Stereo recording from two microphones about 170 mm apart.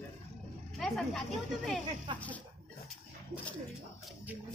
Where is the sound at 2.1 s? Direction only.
30° right (ahead or behind).